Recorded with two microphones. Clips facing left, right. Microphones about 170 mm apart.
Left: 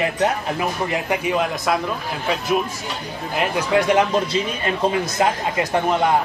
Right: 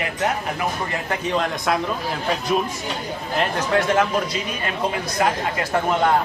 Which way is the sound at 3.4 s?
10° left (ahead or behind).